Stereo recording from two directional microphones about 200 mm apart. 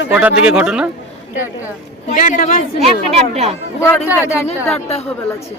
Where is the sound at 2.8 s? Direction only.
30° right (ahead or behind).